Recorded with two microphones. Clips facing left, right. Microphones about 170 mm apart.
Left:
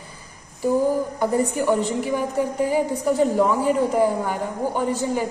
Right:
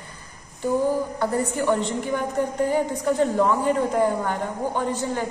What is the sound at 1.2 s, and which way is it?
A woman's voice, 15° left (ahead or behind).